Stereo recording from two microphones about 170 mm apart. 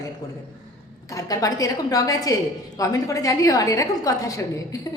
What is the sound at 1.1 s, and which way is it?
A woman's voice, 20° left (ahead or behind).